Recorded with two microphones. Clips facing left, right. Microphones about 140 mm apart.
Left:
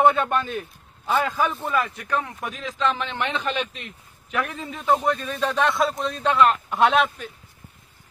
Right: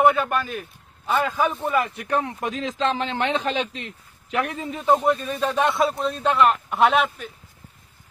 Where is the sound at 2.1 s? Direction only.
30° right (ahead or behind).